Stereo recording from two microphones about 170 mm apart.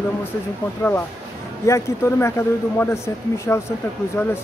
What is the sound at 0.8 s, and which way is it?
Speech, 15° left (ahead or behind).